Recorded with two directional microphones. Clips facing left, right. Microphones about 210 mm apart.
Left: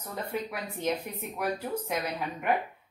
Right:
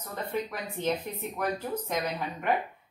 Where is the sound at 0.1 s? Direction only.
10° left (ahead or behind).